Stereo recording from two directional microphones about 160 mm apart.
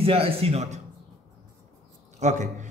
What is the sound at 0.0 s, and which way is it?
Speech, 35° right (ahead or behind).